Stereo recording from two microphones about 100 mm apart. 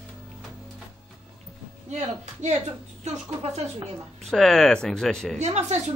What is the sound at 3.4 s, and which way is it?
Speech, 90° right.